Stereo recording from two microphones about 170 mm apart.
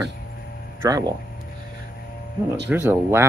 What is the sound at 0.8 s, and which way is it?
Speech, 20° right (ahead or behind).